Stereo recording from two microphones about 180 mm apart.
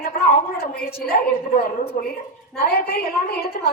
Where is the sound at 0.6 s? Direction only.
55° left (ahead or behind).